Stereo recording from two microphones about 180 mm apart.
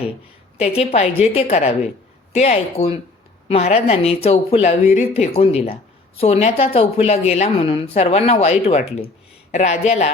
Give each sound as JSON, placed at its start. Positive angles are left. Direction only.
{"t": 0.5, "sound": "a woman's voice", "side_deg": 35}